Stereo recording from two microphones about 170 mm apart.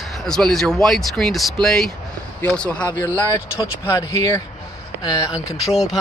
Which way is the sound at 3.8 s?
20° left (ahead or behind).